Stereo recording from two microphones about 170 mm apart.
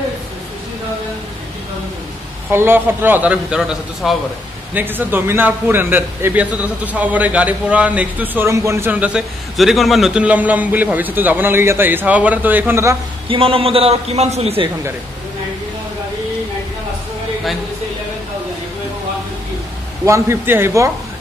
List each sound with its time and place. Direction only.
2.5 s a man's voice: 15° right (ahead or behind)
13.3 s a man's voice: 35° right (ahead or behind)
20.1 s a man's voice: 15° right (ahead or behind)